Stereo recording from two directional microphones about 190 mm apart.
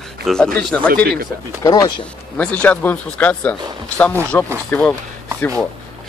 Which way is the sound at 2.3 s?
5° left (ahead or behind).